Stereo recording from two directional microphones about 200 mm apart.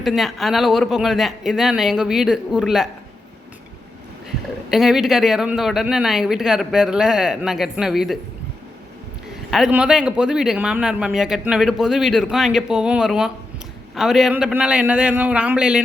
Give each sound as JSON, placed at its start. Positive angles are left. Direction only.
{"t": 0.0, "sound": "a man's voice", "side_deg": 0}
{"t": 4.7, "sound": "a man's voice", "side_deg": 0}
{"t": 9.5, "sound": "a man's voice", "side_deg": -5}